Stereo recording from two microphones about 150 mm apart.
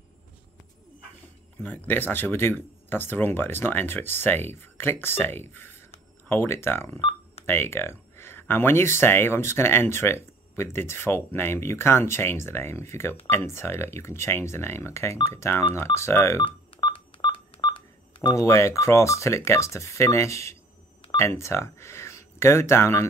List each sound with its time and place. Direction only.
1.6 s speech: 10° left (ahead or behind)
7.0 s telephone dialing: 40° left (ahead or behind)
7.4 s speech: 15° left (ahead or behind)
16.4 s telephone dialing: 35° left (ahead or behind)
18.3 s speech: 20° left (ahead or behind)